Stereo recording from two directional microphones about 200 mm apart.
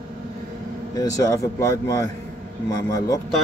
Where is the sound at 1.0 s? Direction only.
15° left (ahead or behind).